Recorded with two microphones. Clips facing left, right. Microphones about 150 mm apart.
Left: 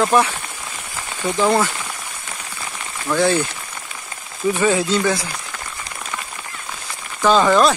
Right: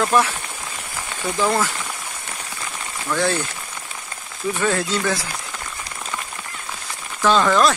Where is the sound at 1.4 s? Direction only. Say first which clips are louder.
Left 3 dB; 5° left (ahead or behind).